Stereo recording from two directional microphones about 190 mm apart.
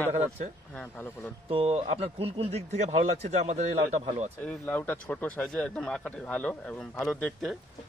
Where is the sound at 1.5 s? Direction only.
30° right (ahead or behind).